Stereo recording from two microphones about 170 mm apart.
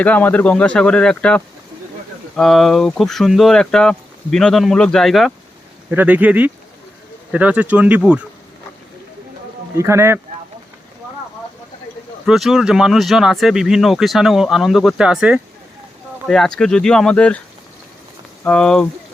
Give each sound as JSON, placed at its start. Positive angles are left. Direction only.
{"t": 0.0, "sound": "speech", "side_deg": 10}
{"t": 5.9, "sound": "speech", "side_deg": -10}
{"t": 9.7, "sound": "speech", "side_deg": -15}
{"t": 12.2, "sound": "speech", "side_deg": 0}
{"t": 18.4, "sound": "speech", "side_deg": 5}